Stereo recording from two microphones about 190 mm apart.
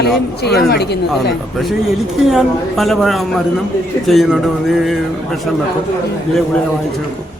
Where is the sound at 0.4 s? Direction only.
60° left (ahead or behind).